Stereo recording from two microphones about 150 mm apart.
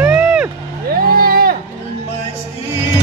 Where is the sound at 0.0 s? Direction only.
10° right (ahead or behind).